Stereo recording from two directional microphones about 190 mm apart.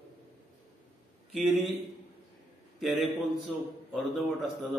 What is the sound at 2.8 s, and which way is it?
A man's voice, centre (ahead or behind).